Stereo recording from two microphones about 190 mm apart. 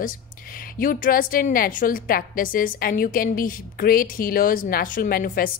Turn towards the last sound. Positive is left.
turn(degrees=50)  # may be behind; listen again after turning